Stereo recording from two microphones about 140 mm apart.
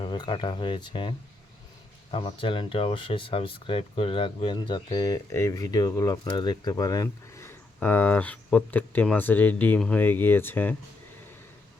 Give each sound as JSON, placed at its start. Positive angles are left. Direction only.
{"t": 0.0, "sound": "speech", "side_deg": 35}